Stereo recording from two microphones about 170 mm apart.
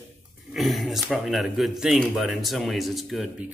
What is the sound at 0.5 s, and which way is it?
Speech, centre (ahead or behind).